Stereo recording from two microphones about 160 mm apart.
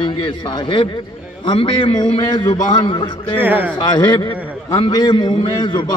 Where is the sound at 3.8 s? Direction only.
30° left (ahead or behind).